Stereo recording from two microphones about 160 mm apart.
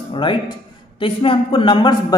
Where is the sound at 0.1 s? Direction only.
30° left (ahead or behind).